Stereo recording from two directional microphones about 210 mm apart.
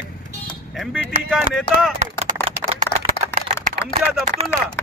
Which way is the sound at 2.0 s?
35° right (ahead or behind).